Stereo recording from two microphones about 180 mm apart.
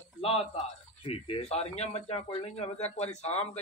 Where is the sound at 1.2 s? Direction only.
35° left (ahead or behind).